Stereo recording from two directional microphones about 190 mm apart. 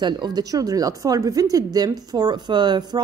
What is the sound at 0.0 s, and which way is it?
A woman's voice, 20° right (ahead or behind).